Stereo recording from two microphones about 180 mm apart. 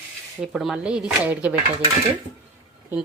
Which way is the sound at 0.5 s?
5° right (ahead or behind).